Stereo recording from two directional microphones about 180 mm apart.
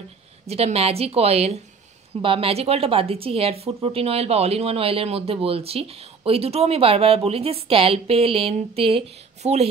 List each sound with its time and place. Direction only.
0.5 s speech: 35° right (ahead or behind)